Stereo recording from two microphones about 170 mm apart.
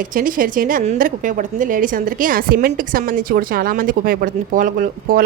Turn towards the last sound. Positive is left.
turn(degrees=-55)  # may be behind; listen again after turning